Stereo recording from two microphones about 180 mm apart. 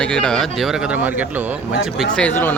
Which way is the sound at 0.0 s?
5° left (ahead or behind).